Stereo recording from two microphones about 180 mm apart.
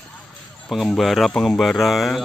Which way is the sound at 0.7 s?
Centre (ahead or behind).